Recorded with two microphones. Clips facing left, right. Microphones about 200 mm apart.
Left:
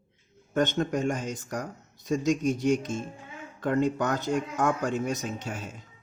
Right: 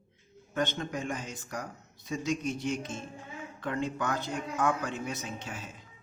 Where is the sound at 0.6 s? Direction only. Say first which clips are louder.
Left 7 dB; 45° left (ahead or behind).